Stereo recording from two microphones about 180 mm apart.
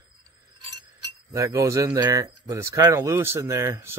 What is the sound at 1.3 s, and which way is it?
Speech, 15° right (ahead or behind).